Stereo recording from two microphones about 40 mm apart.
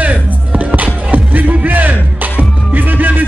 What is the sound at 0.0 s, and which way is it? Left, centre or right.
Music, right.